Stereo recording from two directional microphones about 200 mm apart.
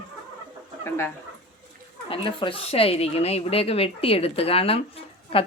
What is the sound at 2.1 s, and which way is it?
Speech, 25° left (ahead or behind).